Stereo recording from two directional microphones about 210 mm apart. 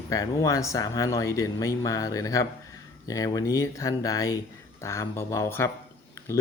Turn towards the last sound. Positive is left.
turn(degrees=15)  # may be behind; listen again after turning